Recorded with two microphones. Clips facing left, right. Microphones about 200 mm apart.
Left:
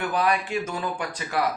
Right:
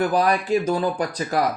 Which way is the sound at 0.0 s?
35° right (ahead or behind).